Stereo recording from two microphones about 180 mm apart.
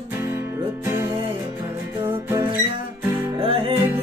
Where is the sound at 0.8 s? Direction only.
15° right (ahead or behind).